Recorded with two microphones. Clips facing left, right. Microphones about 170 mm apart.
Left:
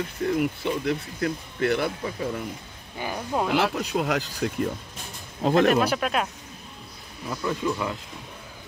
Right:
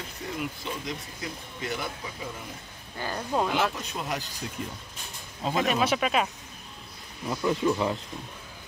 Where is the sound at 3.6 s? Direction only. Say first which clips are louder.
Left 5 dB; 65° left (ahead or behind).